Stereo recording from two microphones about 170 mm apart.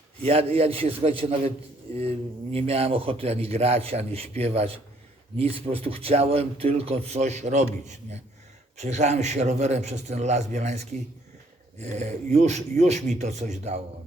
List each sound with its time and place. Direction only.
0.2 s speech: 35° right (ahead or behind)